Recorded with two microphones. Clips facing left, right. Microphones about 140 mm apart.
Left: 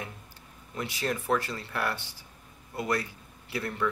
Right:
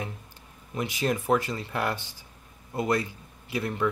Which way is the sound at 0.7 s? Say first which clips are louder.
Right 4 dB; 20° right (ahead or behind).